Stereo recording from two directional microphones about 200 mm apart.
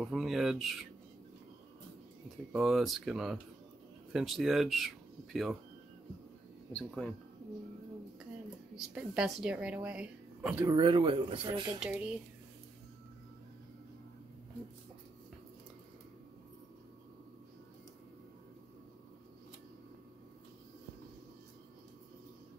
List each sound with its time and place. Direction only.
0.0 s a woman's voice: centre (ahead or behind)
2.2 s a woman's voice: centre (ahead or behind)
6.7 s a woman's voice: 5° left (ahead or behind)
8.7 s a woman's voice: 5° right (ahead or behind)
10.6 s speech: 20° right (ahead or behind)
11.8 s a woman's voice: 5° right (ahead or behind)